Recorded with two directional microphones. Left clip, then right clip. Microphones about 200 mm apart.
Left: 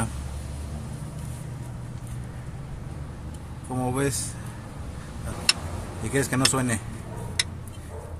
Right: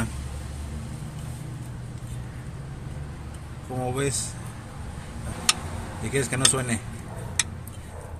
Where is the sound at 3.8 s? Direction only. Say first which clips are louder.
Left 1 dB; 20° left (ahead or behind).